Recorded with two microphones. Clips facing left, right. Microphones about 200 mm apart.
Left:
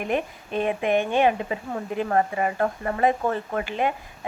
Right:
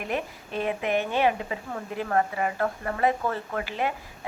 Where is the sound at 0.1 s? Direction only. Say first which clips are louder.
Left 4 dB; 20° left (ahead or behind).